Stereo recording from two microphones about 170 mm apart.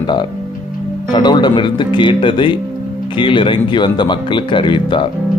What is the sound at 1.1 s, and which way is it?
Speech, 25° left (ahead or behind).